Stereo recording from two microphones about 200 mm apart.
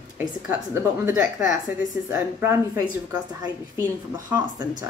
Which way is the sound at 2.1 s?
10° right (ahead or behind).